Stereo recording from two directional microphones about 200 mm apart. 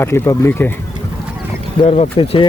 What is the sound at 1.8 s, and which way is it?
Speech, 30° left (ahead or behind).